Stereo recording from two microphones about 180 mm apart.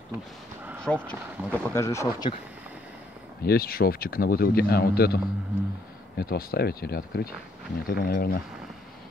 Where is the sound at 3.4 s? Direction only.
55° left (ahead or behind).